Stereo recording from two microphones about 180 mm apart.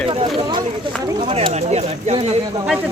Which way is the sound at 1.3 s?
35° right (ahead or behind).